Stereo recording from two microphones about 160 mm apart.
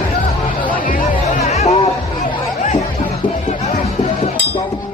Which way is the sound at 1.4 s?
45° left (ahead or behind).